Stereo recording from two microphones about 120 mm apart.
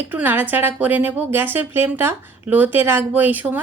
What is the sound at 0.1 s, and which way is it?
A woman's voice, 15° right (ahead or behind).